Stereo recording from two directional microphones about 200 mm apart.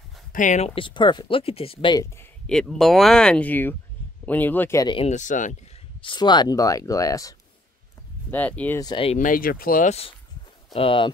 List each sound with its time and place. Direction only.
0.3 s speech: 40° left (ahead or behind)
5.9 s speech: 25° left (ahead or behind)
9.2 s speech: 45° left (ahead or behind); by 11.1 s 25° left (ahead or behind)